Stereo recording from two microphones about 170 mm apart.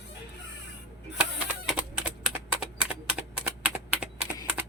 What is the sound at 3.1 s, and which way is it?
Typing, 10° right (ahead or behind).